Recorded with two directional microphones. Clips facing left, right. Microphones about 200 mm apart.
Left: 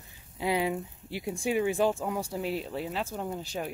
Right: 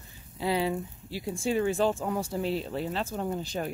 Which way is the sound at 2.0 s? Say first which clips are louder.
Right 2 dB; centre (ahead or behind).